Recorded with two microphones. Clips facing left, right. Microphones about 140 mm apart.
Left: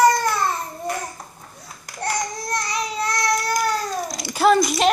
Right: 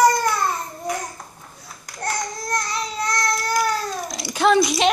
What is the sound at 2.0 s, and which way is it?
Baby cry, 10° left (ahead or behind).